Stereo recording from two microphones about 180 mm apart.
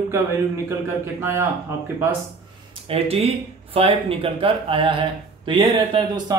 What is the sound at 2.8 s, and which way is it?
Speech, 35° right (ahead or behind).